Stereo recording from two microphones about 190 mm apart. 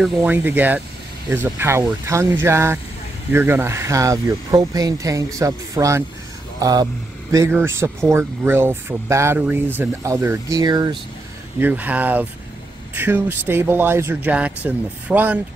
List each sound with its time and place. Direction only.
0.0 s speech: 10° right (ahead or behind)
11.6 s speech: 10° right (ahead or behind)